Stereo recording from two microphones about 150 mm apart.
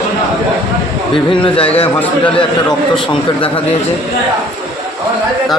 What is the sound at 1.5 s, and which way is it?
Speech, 40° left (ahead or behind).